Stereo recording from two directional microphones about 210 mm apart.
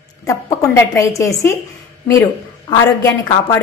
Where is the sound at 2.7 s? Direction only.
20° left (ahead or behind).